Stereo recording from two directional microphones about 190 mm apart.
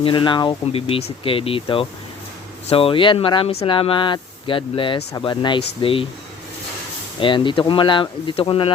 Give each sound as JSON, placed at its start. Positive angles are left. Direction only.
{"t": 0.0, "sound": "speech", "side_deg": 25}
{"t": 7.2, "sound": "speech", "side_deg": 25}